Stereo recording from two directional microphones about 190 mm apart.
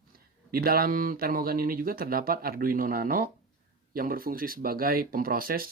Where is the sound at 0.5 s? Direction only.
50° right (ahead or behind).